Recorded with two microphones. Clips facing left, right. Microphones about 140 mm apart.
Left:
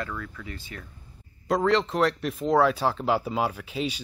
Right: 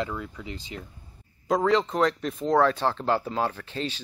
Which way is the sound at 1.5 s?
Centre (ahead or behind).